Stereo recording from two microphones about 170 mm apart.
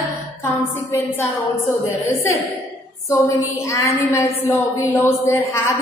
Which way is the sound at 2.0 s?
15° left (ahead or behind).